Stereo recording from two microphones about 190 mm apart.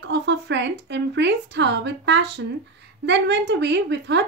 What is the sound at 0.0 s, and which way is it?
A woman's voice, 65° right (ahead or behind).